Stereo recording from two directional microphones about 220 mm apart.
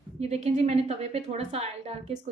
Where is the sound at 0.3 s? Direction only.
30° right (ahead or behind).